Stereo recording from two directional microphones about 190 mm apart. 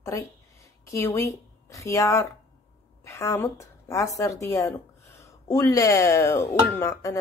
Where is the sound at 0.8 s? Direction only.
15° left (ahead or behind).